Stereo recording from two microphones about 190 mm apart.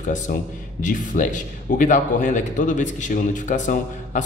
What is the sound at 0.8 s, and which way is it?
A man's voice, 40° left (ahead or behind).